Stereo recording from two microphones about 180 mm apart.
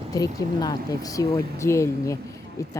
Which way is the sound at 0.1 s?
20° left (ahead or behind).